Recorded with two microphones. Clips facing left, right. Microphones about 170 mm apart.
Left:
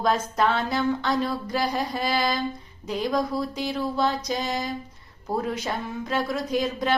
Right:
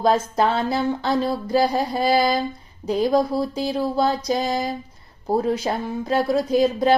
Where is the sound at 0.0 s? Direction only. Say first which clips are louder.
Right 4 dB; 30° right (ahead or behind).